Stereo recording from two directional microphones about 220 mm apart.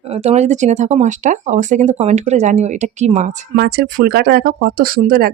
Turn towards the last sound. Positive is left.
turn(degrees=-40)  # may be behind; listen again after turning